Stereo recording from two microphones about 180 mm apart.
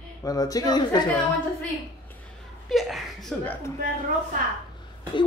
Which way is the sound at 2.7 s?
Centre (ahead or behind).